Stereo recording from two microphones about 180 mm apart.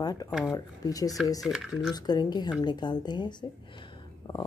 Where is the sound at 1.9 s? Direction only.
20° left (ahead or behind).